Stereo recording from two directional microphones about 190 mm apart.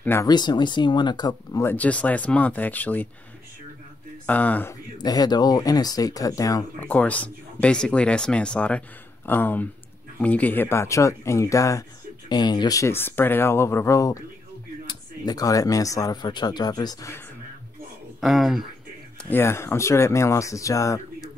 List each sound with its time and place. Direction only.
0.0 s speech: 15° left (ahead or behind)
4.3 s speech: 10° left (ahead or behind)
4.9 s speech: 20° left (ahead or behind)
18.2 s speech: centre (ahead or behind)
19.2 s speech: 10° left (ahead or behind)